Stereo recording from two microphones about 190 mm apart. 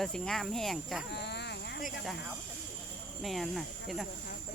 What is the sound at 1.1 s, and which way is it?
Insect, 65° left (ahead or behind).